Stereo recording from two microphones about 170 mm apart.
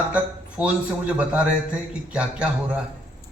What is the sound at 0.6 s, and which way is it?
A man's voice, 5° right (ahead or behind).